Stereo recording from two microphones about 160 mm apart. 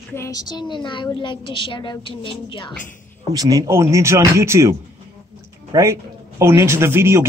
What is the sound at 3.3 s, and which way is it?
A man's voice, 20° right (ahead or behind).